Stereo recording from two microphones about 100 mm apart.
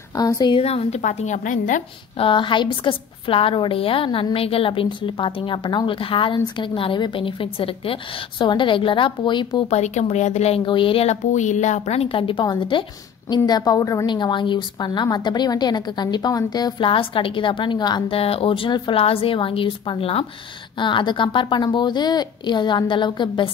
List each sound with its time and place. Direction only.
0.2 s a woman's voice: 40° left (ahead or behind)
0.6 s a woman's voice: 90° left
2.1 s a woman's voice: 55° left (ahead or behind)
9.7 s speech: 90° left
10.6 s a woman's voice: 55° left (ahead or behind)
13.5 s a woman's voice: 40° left (ahead or behind)
14.0 s a woman's voice: 50° left (ahead or behind)
16.8 s a woman's voice: 60° left (ahead or behind)
18.1 s a woman's voice: 75° left (ahead or behind)
20.8 s a woman's voice: 50° left (ahead or behind)